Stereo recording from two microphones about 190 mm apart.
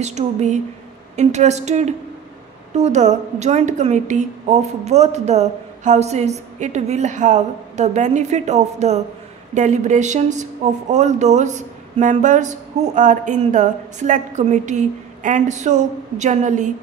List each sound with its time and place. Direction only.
0.0 s speech: 35° right (ahead or behind)